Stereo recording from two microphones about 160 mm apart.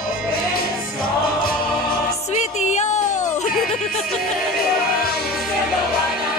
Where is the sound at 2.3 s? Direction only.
45° left (ahead or behind).